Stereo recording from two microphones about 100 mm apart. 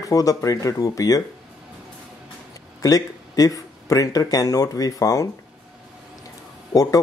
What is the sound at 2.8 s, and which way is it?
Speech, 35° left (ahead or behind).